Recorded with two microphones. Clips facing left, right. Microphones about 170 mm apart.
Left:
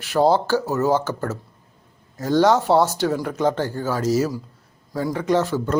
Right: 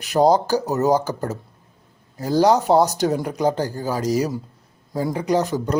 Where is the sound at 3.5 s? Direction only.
35° right (ahead or behind).